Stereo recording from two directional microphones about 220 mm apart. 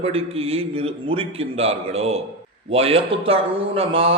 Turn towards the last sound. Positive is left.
turn(degrees=-25)  # may be behind; listen again after turning